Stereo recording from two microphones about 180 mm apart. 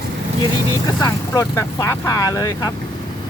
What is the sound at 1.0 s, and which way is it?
Speech, 15° left (ahead or behind).